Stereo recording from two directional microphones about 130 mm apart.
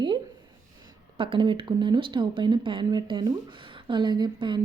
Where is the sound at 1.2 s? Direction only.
40° right (ahead or behind).